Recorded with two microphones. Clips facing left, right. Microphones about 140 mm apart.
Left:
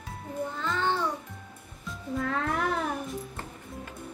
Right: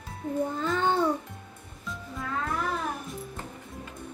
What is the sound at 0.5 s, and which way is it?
Child singing, 40° right (ahead or behind).